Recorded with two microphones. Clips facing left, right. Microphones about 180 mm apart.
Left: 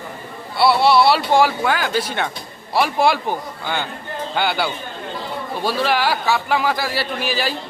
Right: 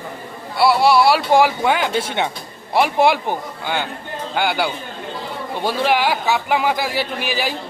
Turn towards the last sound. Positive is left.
turn(degrees=-15)  # may be behind; listen again after turning